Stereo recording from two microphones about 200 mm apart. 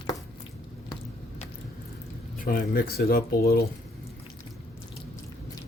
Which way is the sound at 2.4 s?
50° left (ahead or behind).